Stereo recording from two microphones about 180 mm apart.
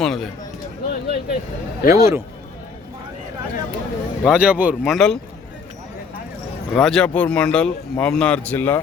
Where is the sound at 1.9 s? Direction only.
15° right (ahead or behind).